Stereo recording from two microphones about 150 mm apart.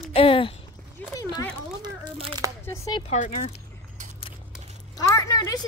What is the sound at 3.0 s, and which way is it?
Speech, 45° left (ahead or behind).